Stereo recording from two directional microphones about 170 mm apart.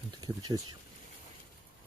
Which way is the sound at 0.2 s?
25° right (ahead or behind).